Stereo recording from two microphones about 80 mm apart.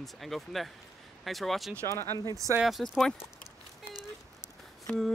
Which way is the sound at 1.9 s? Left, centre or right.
Left.